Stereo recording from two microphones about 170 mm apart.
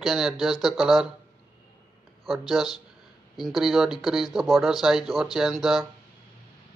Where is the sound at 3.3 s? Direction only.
Centre (ahead or behind).